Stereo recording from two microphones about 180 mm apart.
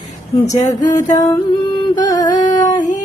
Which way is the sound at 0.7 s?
20° left (ahead or behind).